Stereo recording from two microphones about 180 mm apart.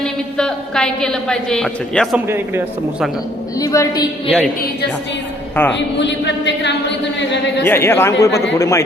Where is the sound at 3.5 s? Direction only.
20° left (ahead or behind).